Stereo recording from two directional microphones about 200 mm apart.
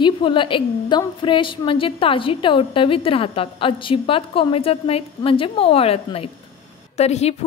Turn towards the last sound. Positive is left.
turn(degrees=30)  # may be behind; listen again after turning